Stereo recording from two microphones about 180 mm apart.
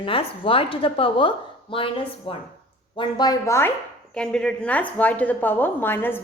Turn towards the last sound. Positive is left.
turn(degrees=10)  # may be behind; listen again after turning